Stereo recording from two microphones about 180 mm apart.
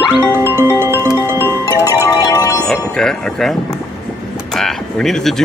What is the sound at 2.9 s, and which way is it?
Speech, 5° left (ahead or behind).